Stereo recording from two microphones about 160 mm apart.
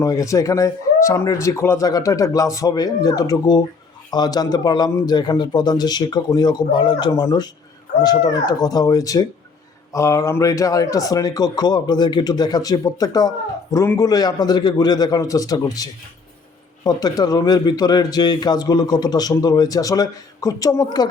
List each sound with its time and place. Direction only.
0.0 s a man's voice: 20° left (ahead or behind)